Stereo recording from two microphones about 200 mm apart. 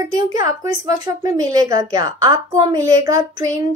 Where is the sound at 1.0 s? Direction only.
15° right (ahead or behind).